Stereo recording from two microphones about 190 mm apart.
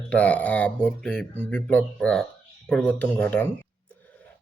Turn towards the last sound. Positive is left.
turn(degrees=10)  # may be behind; listen again after turning